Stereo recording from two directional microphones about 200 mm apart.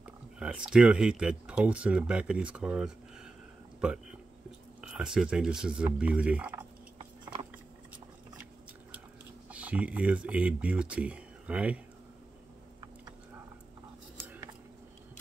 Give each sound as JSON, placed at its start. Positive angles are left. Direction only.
{"t": 0.0, "sound": "speech", "side_deg": -5}
{"t": 4.8, "sound": "speech", "side_deg": -5}
{"t": 9.5, "sound": "speech", "side_deg": -5}
{"t": 14.1, "sound": "a sound", "side_deg": -10}